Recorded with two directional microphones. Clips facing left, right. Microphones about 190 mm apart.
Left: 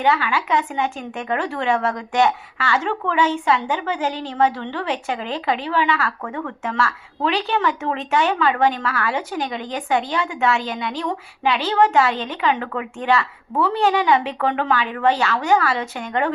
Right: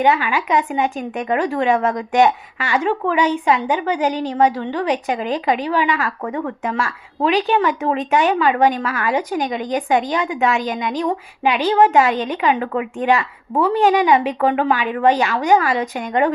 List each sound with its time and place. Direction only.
0.0 s speech: 15° right (ahead or behind)